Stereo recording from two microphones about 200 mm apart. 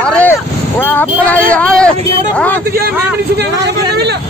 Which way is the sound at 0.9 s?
10° left (ahead or behind).